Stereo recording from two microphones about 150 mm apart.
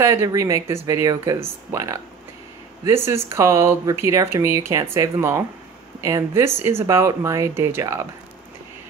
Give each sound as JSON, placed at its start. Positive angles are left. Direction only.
{"t": 0.0, "sound": "speech", "side_deg": -20}